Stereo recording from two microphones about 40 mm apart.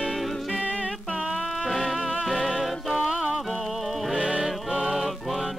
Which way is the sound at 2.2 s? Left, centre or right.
Centre.